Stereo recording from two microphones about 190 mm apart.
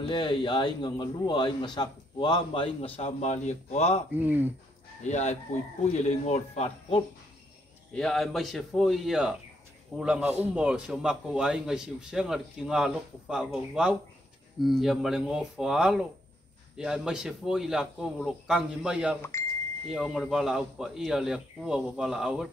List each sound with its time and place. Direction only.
0.0 s a man's voice: 25° left (ahead or behind)
4.1 s speech: 10° right (ahead or behind)
5.0 s a man's voice: 35° left (ahead or behind)
7.9 s speech: centre (ahead or behind)